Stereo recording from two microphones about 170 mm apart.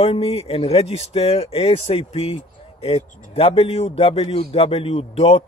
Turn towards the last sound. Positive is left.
turn(degrees=35)  # may be behind; listen again after turning